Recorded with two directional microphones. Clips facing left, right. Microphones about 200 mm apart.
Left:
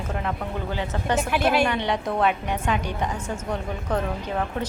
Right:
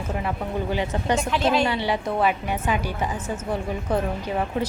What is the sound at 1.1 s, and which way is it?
Speech, 10° left (ahead or behind).